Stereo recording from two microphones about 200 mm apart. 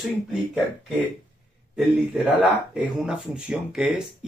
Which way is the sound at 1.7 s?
5° right (ahead or behind).